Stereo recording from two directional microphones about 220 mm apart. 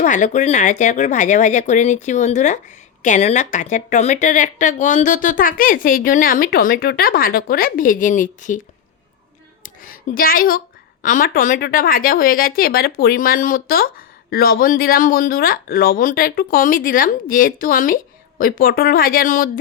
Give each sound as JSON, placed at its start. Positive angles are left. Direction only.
{"t": 0.0, "sound": "speech", "side_deg": 35}
{"t": 9.6, "sound": "a sound", "side_deg": 40}
{"t": 11.0, "sound": "speech", "side_deg": 35}